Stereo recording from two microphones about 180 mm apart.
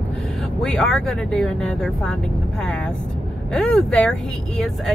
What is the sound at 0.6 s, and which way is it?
Speech, 5° left (ahead or behind).